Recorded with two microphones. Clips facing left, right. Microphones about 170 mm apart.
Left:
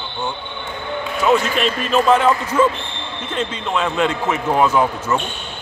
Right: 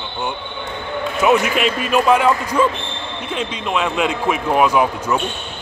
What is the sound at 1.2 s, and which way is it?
Speech, 15° right (ahead or behind).